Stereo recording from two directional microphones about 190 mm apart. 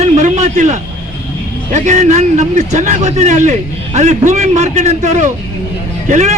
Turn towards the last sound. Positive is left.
turn(degrees=-35)  # may be behind; listen again after turning